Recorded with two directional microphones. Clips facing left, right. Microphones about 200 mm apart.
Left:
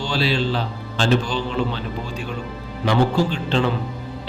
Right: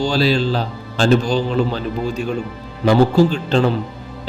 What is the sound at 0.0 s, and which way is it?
A man's voice, 40° right (ahead or behind).